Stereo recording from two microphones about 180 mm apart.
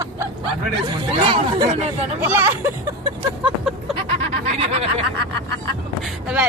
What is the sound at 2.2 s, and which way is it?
Speech, 10° right (ahead or behind).